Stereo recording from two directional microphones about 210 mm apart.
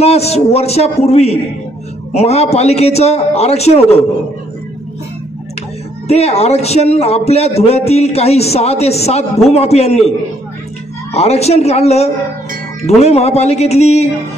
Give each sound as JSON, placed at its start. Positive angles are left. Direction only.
{"t": 0.0, "sound": "a man's voice", "side_deg": 30}
{"t": 6.0, "sound": "a man's voice", "side_deg": 30}
{"t": 11.1, "sound": "a man's voice", "side_deg": 30}